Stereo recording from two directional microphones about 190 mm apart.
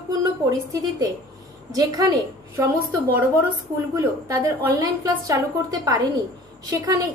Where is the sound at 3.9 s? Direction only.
20° right (ahead or behind).